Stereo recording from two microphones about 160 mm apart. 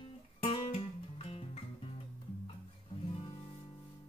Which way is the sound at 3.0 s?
35° left (ahead or behind).